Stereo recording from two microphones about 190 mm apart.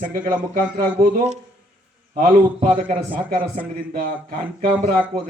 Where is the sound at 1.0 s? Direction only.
35° right (ahead or behind).